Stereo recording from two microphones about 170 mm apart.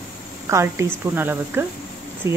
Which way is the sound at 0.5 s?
15° right (ahead or behind).